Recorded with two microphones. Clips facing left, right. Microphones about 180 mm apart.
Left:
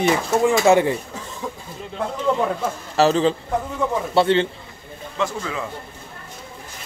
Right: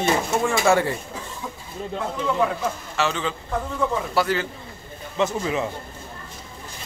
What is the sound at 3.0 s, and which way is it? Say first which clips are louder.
A man's voice: left 9 dB; 35° left (ahead or behind).